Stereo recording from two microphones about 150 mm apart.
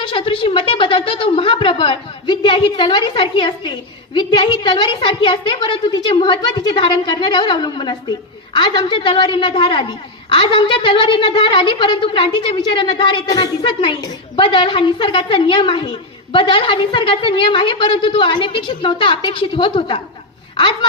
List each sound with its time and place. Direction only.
0.0 s a woman's voice: 35° left (ahead or behind)